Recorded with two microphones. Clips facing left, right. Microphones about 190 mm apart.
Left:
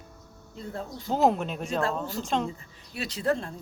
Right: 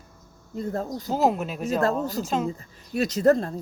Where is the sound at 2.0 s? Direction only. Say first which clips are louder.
Right 5 dB; 40° right (ahead or behind).